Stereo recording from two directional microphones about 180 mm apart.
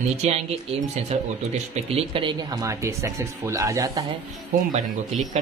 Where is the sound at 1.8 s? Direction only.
30° right (ahead or behind).